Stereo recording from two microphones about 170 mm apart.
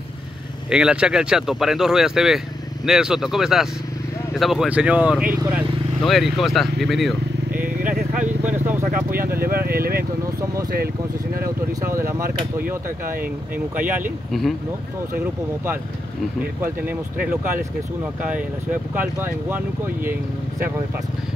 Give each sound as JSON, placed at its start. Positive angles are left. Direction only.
{"t": 0.7, "sound": "speech", "side_deg": -5}
{"t": 7.8, "sound": "vehicle", "side_deg": -5}
{"t": 9.4, "sound": "speech", "side_deg": -60}
{"t": 11.4, "sound": "speech", "side_deg": -15}
{"t": 14.3, "sound": "speech", "side_deg": 0}
{"t": 16.6, "sound": "speech", "side_deg": -10}